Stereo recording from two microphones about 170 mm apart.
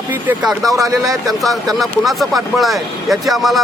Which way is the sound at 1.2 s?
Centre (ahead or behind).